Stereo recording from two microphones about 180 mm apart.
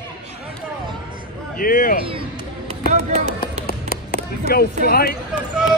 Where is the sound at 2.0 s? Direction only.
30° right (ahead or behind).